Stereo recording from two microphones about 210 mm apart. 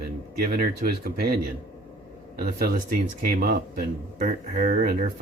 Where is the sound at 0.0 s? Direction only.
45° right (ahead or behind).